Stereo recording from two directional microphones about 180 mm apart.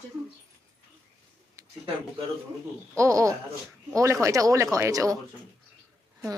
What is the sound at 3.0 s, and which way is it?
A woman's voice, 15° right (ahead or behind).